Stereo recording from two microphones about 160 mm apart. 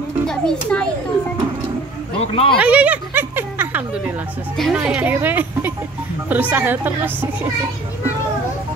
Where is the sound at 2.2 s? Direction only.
35° left (ahead or behind).